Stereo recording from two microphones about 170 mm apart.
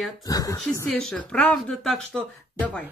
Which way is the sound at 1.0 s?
5° left (ahead or behind).